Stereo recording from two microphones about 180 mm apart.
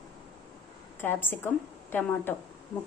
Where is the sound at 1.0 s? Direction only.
10° left (ahead or behind).